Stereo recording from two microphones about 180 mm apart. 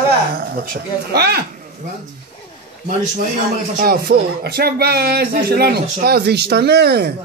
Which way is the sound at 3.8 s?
55° right (ahead or behind).